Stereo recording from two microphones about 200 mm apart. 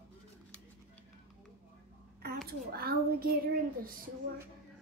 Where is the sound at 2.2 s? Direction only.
50° right (ahead or behind).